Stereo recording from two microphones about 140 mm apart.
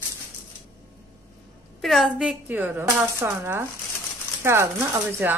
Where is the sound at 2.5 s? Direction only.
10° right (ahead or behind).